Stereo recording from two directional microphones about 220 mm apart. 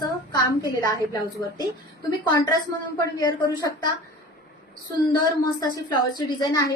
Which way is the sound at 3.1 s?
15° left (ahead or behind).